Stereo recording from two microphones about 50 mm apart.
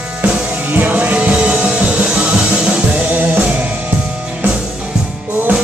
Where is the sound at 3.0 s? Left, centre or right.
Right.